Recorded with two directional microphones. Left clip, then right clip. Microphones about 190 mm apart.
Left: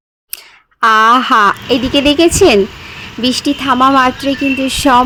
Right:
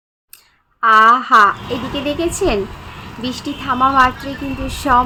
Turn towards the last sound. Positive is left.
turn(degrees=45)  # may be behind; listen again after turning